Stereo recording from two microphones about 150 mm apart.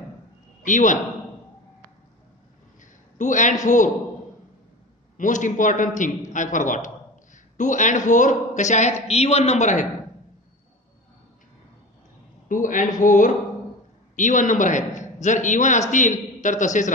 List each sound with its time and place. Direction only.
0.7 s a man's voice: 60° left (ahead or behind)
2.8 s a man's voice: 55° left (ahead or behind)
5.1 s a man's voice: 55° left (ahead or behind)
12.4 s a man's voice: 60° left (ahead or behind)